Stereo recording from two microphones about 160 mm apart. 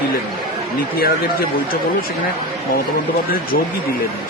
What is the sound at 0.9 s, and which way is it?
Speech, 65° left (ahead or behind).